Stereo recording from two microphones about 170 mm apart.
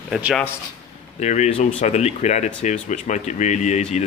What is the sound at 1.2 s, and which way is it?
Speech, 45° left (ahead or behind).